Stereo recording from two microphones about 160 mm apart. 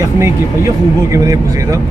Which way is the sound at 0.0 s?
20° right (ahead or behind).